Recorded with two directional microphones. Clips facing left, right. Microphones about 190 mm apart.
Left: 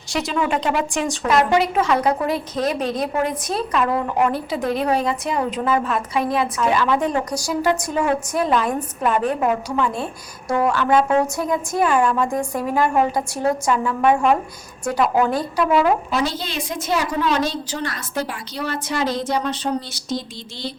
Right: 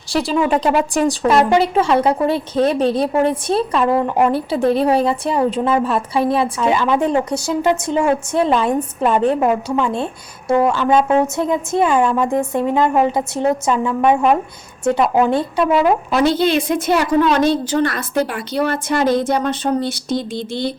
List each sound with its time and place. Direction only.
0.1 s a woman's voice: 35° right (ahead or behind)
16.1 s a woman's voice: 60° right (ahead or behind)